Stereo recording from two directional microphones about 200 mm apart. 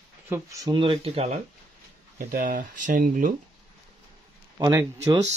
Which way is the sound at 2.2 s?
45° right (ahead or behind).